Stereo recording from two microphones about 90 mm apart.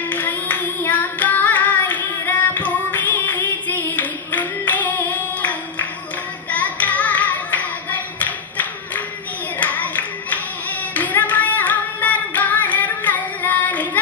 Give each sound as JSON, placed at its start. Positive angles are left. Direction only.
{"t": 0.1, "sound": "singing", "side_deg": 20}
{"t": 6.5, "sound": "hands", "side_deg": 15}
{"t": 9.6, "sound": "clapping", "side_deg": 20}
{"t": 11.0, "sound": "music", "side_deg": 20}